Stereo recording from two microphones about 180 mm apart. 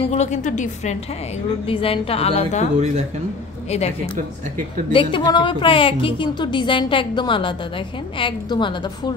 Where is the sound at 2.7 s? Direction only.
40° right (ahead or behind).